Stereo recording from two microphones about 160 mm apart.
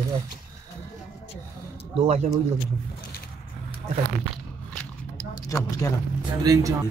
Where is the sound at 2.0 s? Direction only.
40° right (ahead or behind).